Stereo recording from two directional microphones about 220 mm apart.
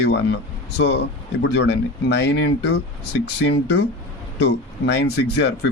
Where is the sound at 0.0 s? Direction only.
50° left (ahead or behind).